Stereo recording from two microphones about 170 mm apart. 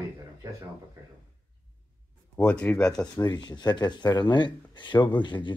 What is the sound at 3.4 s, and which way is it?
Speech, 25° left (ahead or behind).